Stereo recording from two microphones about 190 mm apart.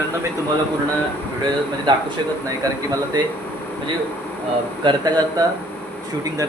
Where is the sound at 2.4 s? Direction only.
20° right (ahead or behind).